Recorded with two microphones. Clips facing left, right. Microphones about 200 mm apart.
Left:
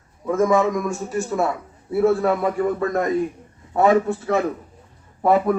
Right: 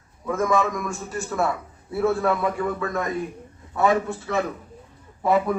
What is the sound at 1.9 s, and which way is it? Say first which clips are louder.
Speech: left 4 dB; 30° left (ahead or behind).